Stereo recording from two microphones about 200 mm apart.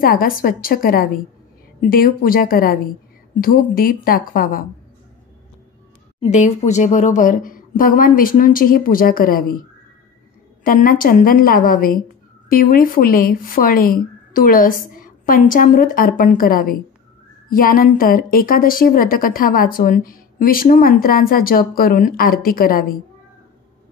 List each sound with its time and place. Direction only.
0.0 s a woman's voice: 45° left (ahead or behind)
6.2 s a woman's voice: 35° left (ahead or behind)
10.6 s a woman's voice: 45° left (ahead or behind)